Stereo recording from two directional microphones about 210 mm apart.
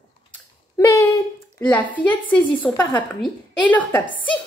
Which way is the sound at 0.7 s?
15° left (ahead or behind).